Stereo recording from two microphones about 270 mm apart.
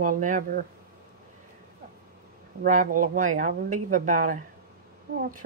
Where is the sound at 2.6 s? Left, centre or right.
Right.